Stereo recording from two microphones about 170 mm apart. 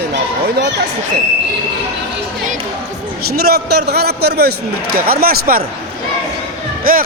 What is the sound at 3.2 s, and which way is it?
A man's voice, 65° right (ahead or behind).